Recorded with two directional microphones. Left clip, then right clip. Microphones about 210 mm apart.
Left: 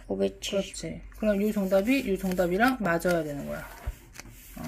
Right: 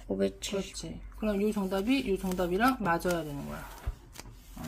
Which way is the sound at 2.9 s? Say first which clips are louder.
Left 4 dB; 40° left (ahead or behind).